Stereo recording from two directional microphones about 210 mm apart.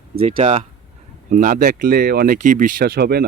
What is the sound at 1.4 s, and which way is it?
Speech, 40° right (ahead or behind).